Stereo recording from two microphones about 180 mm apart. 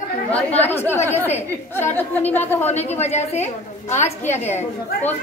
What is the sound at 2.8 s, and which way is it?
A woman's voice, 35° left (ahead or behind).